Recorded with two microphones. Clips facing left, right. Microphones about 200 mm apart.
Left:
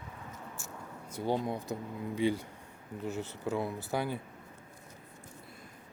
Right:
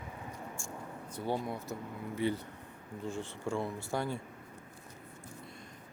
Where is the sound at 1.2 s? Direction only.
15° left (ahead or behind).